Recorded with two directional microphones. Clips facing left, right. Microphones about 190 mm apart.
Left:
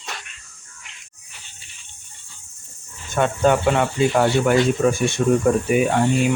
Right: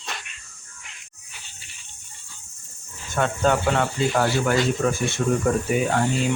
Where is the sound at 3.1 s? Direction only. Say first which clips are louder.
Left 4 dB; 15° left (ahead or behind).